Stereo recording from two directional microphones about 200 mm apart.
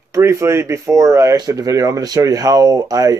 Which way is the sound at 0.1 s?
15° right (ahead or behind).